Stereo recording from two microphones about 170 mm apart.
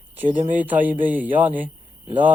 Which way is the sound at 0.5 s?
10° right (ahead or behind).